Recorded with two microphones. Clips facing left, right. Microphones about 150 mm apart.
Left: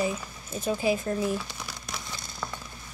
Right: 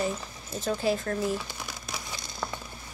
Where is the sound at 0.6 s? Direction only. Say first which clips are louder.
Left 1 dB; 15° left (ahead or behind).